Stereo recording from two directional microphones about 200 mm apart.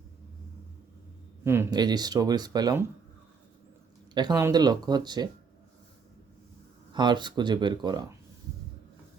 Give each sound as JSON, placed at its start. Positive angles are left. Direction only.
{"t": 1.5, "sound": "speech", "side_deg": -15}
{"t": 4.1, "sound": "speech", "side_deg": -20}
{"t": 6.9, "sound": "speech", "side_deg": -20}